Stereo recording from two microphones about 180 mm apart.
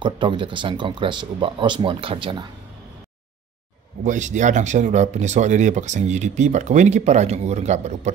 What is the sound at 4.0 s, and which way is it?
Speech, 45° right (ahead or behind).